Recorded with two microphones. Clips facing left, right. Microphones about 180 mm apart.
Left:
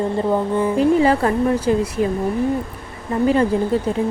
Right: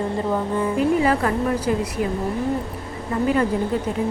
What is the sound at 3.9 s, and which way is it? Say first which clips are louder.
Speech: left 4 dB; 30° left (ahead or behind).